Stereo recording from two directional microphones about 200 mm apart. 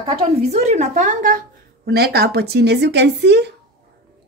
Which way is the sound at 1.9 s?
50° right (ahead or behind).